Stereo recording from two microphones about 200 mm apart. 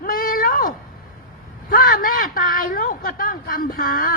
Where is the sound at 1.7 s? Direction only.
45° left (ahead or behind).